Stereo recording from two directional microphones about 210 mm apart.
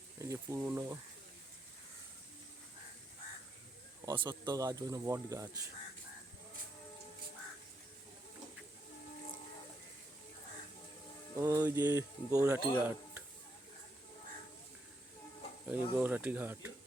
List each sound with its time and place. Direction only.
0.2 s speech: 15° right (ahead or behind)
4.0 s speech: 20° right (ahead or behind)
11.3 s speech: 15° right (ahead or behind)
15.6 s speech: 10° right (ahead or behind)